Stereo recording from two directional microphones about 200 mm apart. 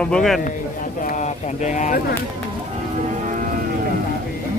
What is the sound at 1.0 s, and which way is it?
Speech, 35° left (ahead or behind).